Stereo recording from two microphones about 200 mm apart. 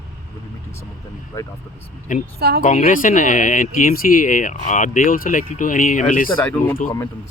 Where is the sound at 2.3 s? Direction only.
50° right (ahead or behind).